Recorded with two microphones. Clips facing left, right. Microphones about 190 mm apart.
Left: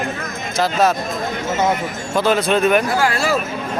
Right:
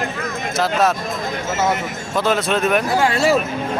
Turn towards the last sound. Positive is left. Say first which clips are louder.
# right 2 dB
turn(degrees=-25)  # may be behind; listen again after turning